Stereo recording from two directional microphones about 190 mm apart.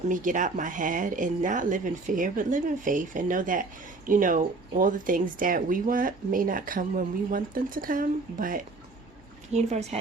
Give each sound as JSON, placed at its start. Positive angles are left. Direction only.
{"t": 0.1, "sound": "speech", "side_deg": -45}